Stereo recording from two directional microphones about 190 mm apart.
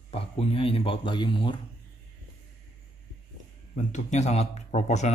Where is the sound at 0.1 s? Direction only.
30° left (ahead or behind).